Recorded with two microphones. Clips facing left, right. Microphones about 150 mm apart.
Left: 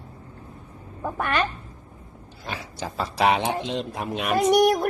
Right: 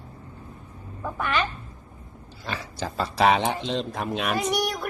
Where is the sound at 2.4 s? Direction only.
10° left (ahead or behind).